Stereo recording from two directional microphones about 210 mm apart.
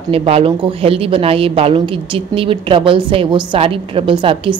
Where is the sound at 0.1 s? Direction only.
25° right (ahead or behind).